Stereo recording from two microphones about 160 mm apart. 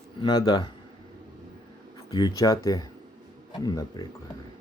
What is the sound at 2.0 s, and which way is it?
Speech, 25° left (ahead or behind).